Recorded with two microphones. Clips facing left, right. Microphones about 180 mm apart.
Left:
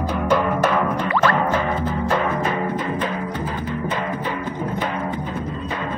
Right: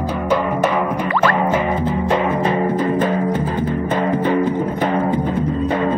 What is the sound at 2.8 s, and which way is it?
Music, 45° right (ahead or behind).